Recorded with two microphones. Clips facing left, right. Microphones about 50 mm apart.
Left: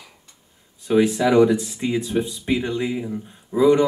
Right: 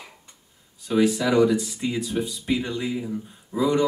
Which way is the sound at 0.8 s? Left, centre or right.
Left.